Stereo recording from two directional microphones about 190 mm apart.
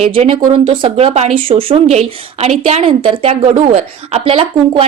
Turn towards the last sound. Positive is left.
turn(degrees=-30)  # may be behind; listen again after turning